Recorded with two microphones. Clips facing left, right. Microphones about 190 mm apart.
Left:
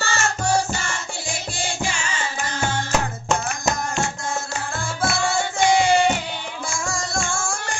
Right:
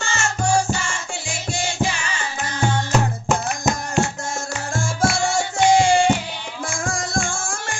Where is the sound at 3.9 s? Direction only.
45° right (ahead or behind).